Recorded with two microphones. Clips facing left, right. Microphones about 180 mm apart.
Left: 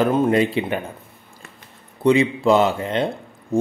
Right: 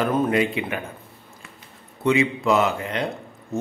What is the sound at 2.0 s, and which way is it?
A man's voice, 30° left (ahead or behind).